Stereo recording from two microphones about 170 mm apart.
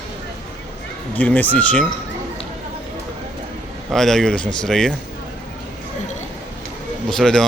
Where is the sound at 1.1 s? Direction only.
10° left (ahead or behind).